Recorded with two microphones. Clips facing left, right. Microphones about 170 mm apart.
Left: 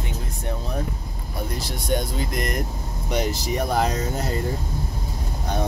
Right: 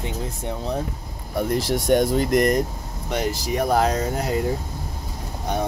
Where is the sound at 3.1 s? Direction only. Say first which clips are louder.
Even; centre (ahead or behind).